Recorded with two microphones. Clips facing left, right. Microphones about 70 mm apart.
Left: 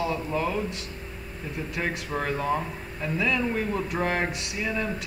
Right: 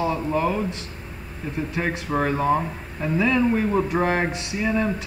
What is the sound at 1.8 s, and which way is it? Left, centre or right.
Speech, centre.